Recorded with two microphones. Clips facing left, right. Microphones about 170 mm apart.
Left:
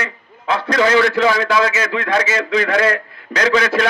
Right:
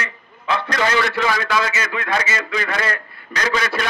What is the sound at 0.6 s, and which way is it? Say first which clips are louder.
A man's voice: left 8 dB; 80° left.